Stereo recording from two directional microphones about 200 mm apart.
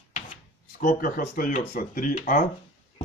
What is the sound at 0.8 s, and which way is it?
Speech, 45° left (ahead or behind).